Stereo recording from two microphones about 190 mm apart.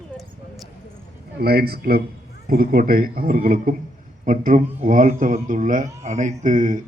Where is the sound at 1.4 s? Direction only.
55° right (ahead or behind).